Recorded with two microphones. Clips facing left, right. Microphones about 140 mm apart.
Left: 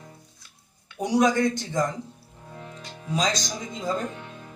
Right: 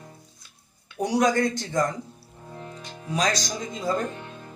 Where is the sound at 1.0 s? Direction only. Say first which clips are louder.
Left 1 dB; 20° left (ahead or behind).